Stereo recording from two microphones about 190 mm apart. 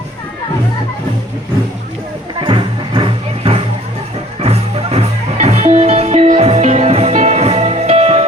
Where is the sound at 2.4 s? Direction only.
25° right (ahead or behind).